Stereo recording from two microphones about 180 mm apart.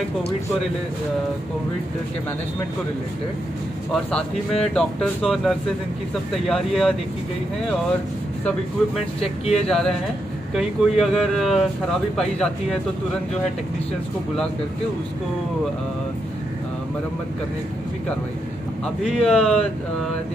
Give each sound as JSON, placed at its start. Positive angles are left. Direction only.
{"t": 3.9, "sound": "speech", "side_deg": 5}
{"t": 9.2, "sound": "speech", "side_deg": 35}
{"t": 9.7, "sound": "speech", "side_deg": 0}
{"t": 19.0, "sound": "speech", "side_deg": 5}